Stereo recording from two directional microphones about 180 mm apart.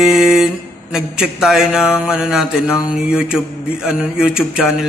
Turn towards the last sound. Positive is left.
turn(degrees=0)  # may be behind; listen again after turning